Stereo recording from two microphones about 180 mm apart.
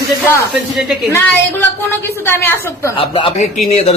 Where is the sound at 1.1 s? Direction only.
10° left (ahead or behind).